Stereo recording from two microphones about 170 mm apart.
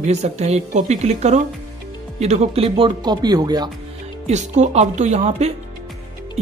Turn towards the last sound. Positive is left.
turn(degrees=-40)  # may be behind; listen again after turning